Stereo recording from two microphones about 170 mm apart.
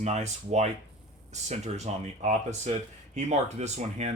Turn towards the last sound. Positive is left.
turn(degrees=-40)  # may be behind; listen again after turning